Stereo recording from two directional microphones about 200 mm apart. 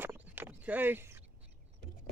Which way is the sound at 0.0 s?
10° right (ahead or behind).